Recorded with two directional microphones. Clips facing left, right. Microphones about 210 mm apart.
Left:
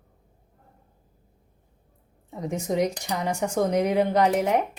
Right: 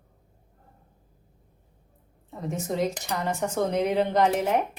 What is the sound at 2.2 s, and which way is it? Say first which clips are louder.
Speech: left 2 dB; 15° left (ahead or behind).